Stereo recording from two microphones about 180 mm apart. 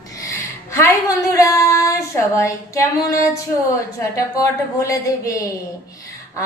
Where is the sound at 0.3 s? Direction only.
15° left (ahead or behind).